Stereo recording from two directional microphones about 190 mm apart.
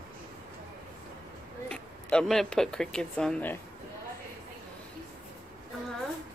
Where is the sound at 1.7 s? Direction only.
5° left (ahead or behind).